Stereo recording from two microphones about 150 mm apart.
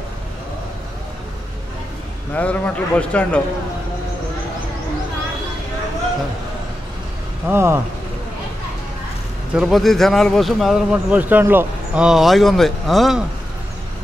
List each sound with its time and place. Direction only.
2.3 s a man's voice: 10° left (ahead or behind)
7.4 s speech: 15° right (ahead or behind)
9.5 s speech: centre (ahead or behind)